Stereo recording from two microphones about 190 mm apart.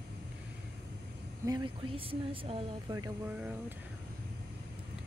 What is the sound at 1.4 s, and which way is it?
Speech, 20° right (ahead or behind).